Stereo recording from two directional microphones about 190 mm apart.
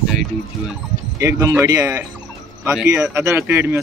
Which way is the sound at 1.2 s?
15° right (ahead or behind).